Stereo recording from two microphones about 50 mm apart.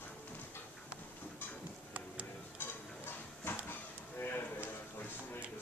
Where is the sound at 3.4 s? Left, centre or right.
Left.